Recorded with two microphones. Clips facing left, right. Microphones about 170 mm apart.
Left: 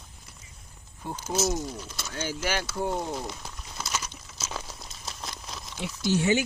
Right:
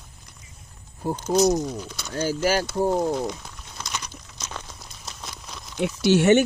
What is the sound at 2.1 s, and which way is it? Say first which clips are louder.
Speech: right 8 dB; 35° right (ahead or behind).